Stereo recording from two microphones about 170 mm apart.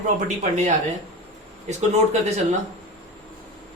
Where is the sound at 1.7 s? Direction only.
40° right (ahead or behind).